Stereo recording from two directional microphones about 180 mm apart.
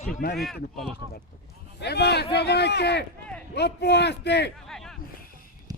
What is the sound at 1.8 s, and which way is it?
A man's voice, 65° left (ahead or behind).